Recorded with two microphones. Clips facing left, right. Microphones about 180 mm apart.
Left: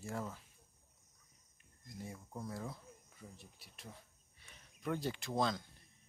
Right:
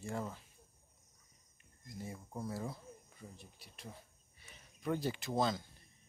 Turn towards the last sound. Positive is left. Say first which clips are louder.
# right 2 dB
turn(degrees=-5)  # may be behind; listen again after turning